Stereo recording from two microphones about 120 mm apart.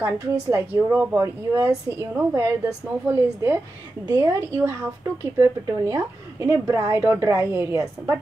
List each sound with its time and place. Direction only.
0.0 s a woman's voice: 20° right (ahead or behind)